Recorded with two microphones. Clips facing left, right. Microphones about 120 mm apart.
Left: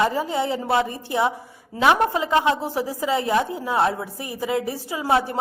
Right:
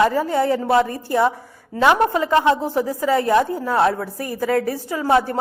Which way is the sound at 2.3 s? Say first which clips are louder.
Right 3 dB; 5° left (ahead or behind).